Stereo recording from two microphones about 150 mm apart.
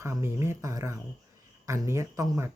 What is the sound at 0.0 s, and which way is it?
Speech, 20° right (ahead or behind).